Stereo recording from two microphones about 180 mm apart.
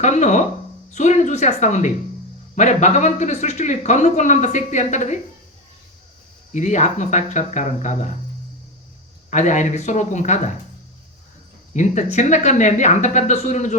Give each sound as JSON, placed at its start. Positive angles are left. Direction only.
{"t": 0.0, "sound": "speech", "side_deg": 40}
{"t": 6.5, "sound": "speech", "side_deg": 40}
{"t": 9.3, "sound": "speech", "side_deg": 40}
{"t": 11.7, "sound": "speech", "side_deg": 40}